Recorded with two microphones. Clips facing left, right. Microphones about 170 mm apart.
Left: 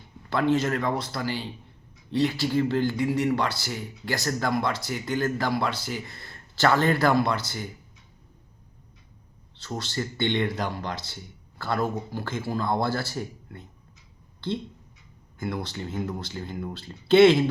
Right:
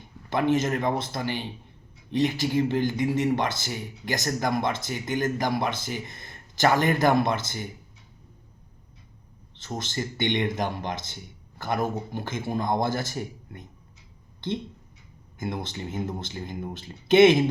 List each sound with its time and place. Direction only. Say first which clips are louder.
0.0 s speech: even; 20° right (ahead or behind)
9.6 s speech: even; 20° right (ahead or behind)